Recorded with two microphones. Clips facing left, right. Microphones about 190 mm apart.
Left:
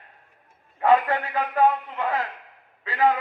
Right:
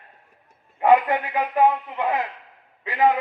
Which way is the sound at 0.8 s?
15° right (ahead or behind).